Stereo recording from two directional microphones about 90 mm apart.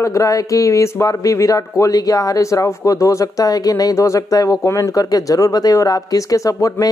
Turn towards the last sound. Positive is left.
turn(degrees=40)  # may be behind; listen again after turning